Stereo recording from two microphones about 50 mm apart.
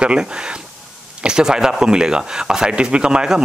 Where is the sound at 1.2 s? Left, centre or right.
Centre.